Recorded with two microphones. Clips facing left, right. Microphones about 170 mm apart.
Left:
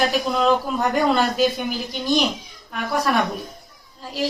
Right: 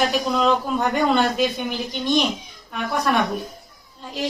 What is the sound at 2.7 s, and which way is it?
A child's voice, centre (ahead or behind).